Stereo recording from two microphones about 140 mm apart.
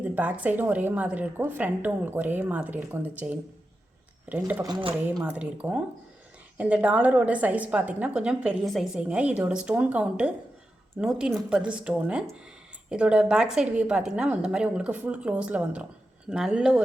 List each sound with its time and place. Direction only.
0.0 s a woman's voice: 10° right (ahead or behind)
4.6 s speech: 35° right (ahead or behind)
5.2 s a woman's voice: 10° right (ahead or behind)